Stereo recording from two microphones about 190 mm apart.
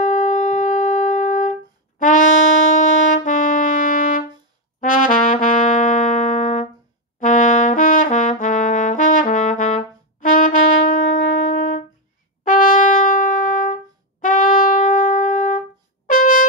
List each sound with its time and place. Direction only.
0.0 s music: 40° left (ahead or behind)
4.7 s trumpet: 45° left (ahead or behind)
16.1 s brass instrument: 45° left (ahead or behind)